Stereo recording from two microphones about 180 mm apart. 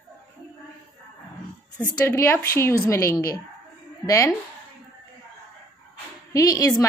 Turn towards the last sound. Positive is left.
turn(degrees=20)  # may be behind; listen again after turning